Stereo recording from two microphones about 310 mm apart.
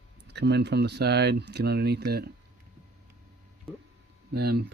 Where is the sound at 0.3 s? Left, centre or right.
Right.